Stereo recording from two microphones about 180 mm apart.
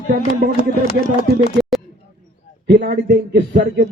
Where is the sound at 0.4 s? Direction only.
55° right (ahead or behind).